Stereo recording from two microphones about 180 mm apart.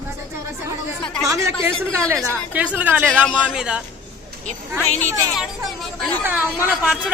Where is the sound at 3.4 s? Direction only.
5° right (ahead or behind).